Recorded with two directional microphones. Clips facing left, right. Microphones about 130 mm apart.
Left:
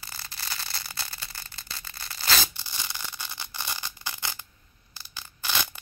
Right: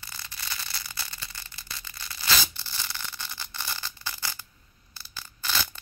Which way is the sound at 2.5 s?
15° left (ahead or behind).